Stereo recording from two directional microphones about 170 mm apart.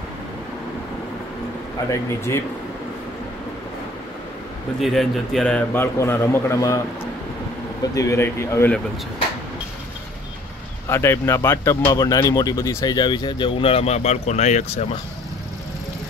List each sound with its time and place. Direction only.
1.9 s a man's voice: 15° left (ahead or behind)
4.8 s a man's voice: centre (ahead or behind); by 6.8 s 15° left (ahead or behind)
7.9 s a man's voice: 20° left (ahead or behind)
10.9 s a man's voice: 15° left (ahead or behind); by 15.0 s 40° left (ahead or behind)